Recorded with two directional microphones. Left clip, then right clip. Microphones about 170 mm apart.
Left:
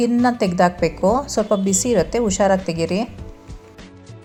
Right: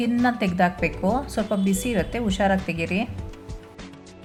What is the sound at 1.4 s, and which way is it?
A woman's voice, 25° left (ahead or behind).